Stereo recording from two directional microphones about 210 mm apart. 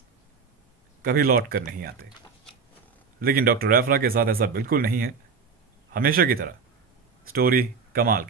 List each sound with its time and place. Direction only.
1.0 s speech: 45° right (ahead or behind)
3.2 s speech: 45° right (ahead or behind)